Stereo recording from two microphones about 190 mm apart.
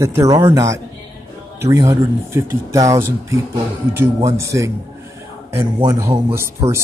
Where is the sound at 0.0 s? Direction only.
15° right (ahead or behind).